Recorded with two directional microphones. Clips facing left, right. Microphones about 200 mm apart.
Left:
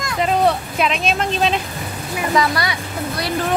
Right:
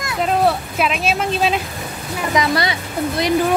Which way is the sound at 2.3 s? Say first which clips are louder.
Right 1 dB; 20° right (ahead or behind).